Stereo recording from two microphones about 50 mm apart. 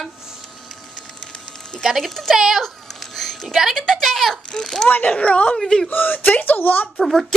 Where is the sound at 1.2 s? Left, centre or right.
Centre.